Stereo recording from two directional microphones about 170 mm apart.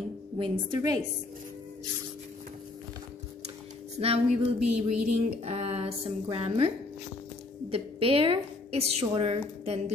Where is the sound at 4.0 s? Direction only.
35° right (ahead or behind).